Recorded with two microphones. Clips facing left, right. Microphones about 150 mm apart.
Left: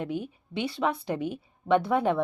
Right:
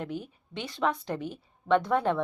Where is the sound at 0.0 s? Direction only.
10° left (ahead or behind).